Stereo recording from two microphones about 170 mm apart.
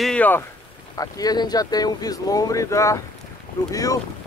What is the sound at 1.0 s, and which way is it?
Speech, 20° left (ahead or behind).